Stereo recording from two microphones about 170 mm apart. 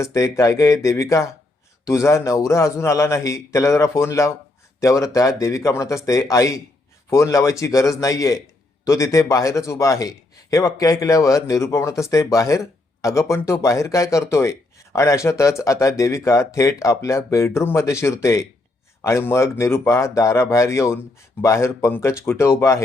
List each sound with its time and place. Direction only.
0.0 s speech: 20° left (ahead or behind)